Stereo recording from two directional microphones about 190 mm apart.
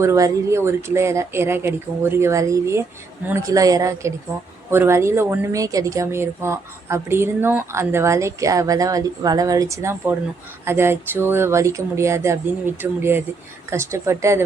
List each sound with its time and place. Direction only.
0.0 s speech: 15° right (ahead or behind)